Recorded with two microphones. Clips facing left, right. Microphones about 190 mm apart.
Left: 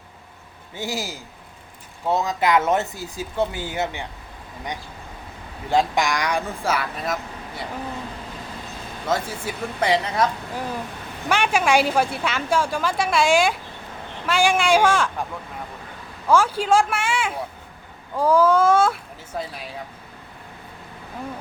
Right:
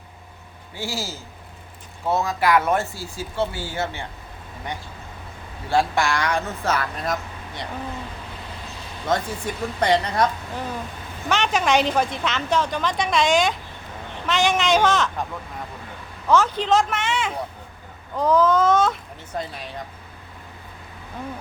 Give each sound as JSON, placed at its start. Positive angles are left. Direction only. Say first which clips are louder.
{"t": 0.8, "sound": "a woman's voice", "louder": "left 1 dB", "side_deg": 15}
{"t": 5.6, "sound": "a woman's voice", "louder": "even", "side_deg": 15}
{"t": 9.0, "sound": "a woman's voice", "louder": "right 1 dB", "side_deg": 5}
{"t": 11.3, "sound": "a woman's voice", "louder": "left 1 dB", "side_deg": 10}
{"t": 16.3, "sound": "a woman's voice", "louder": "left 1 dB", "side_deg": 10}